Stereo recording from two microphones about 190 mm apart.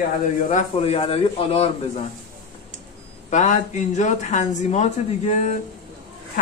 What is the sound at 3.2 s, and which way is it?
Speech, 40° left (ahead or behind).